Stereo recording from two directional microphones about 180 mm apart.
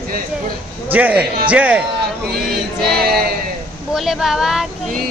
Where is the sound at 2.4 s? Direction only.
Centre (ahead or behind).